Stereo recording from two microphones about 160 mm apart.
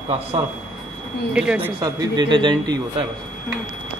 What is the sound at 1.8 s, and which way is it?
Speech, 25° right (ahead or behind).